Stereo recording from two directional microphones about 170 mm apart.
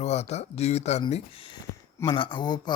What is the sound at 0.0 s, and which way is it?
Speech, 40° left (ahead or behind).